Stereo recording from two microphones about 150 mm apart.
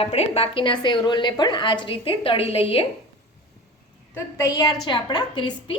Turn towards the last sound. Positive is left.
turn(degrees=30)  # may be behind; listen again after turning